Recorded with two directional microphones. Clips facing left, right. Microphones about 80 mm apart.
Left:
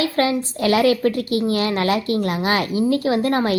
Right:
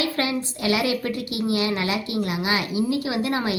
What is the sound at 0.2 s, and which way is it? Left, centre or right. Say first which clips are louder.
A woman's voice: left 6 dB; left.